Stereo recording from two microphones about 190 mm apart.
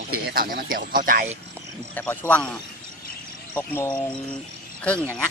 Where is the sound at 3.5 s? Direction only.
10° left (ahead or behind).